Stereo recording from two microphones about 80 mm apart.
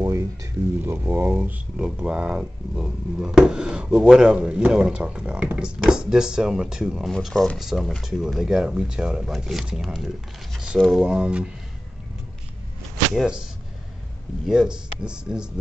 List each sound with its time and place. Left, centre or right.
0.0 s a sound: right
0.8 s speech: right; by 7.1 s centre
7.1 s speech: centre
13.1 s speech: centre